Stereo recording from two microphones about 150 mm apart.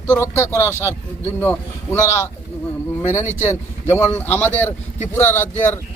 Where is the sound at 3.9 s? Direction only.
15° left (ahead or behind).